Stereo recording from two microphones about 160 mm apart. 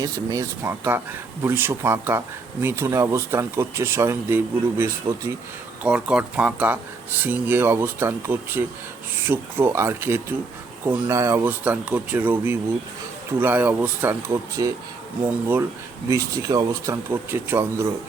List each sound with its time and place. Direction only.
0.0 s speech: 20° right (ahead or behind)
16.0 s speech: 20° right (ahead or behind)